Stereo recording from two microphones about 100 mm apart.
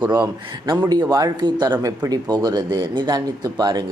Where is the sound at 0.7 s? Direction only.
40° right (ahead or behind).